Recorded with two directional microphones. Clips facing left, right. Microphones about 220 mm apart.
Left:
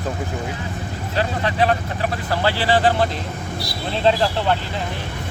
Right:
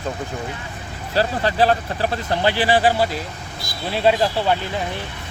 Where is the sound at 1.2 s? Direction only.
35° right (ahead or behind).